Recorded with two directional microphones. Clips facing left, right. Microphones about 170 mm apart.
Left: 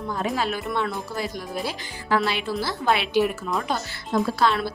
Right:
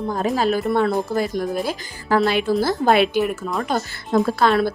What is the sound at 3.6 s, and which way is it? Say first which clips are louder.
A woman's voice: right 5 dB; 45° right (ahead or behind).